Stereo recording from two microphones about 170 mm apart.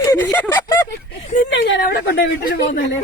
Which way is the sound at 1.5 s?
75° left (ahead or behind).